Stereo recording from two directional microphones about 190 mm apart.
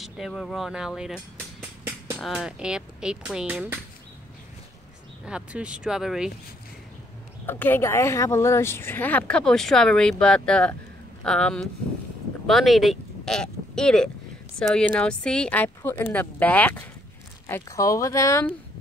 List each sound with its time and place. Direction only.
0.0 s speech: centre (ahead or behind)
5.2 s speech: 5° right (ahead or behind)
7.4 s speech: 10° left (ahead or behind)